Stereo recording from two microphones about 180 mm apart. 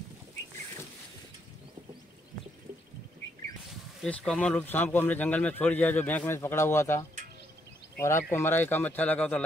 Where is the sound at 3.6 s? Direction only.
5° left (ahead or behind).